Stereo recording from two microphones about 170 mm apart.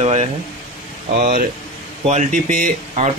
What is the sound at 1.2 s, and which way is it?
Speech, 55° right (ahead or behind).